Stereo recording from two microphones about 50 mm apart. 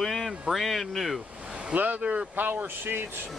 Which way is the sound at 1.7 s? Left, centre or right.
Right.